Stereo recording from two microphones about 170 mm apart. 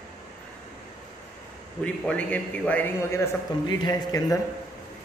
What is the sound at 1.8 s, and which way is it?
A man's voice, 5° left (ahead or behind).